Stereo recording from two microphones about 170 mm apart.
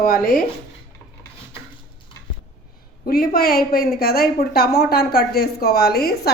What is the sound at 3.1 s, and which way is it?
A woman's voice, 60° left (ahead or behind).